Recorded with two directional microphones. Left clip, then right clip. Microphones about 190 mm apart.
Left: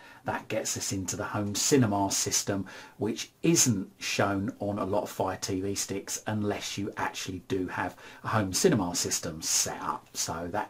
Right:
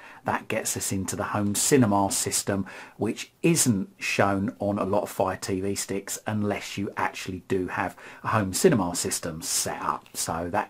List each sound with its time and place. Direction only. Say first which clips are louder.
0.2 s speech: right 4 dB; 45° right (ahead or behind)